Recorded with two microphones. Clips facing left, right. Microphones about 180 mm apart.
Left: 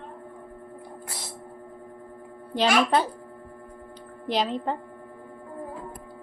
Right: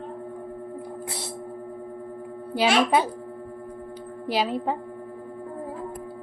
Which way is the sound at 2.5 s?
5° right (ahead or behind).